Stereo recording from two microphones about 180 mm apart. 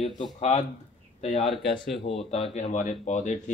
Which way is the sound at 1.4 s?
Centre (ahead or behind).